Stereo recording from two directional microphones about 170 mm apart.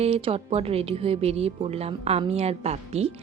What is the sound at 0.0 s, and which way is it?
A woman's voice, 35° right (ahead or behind).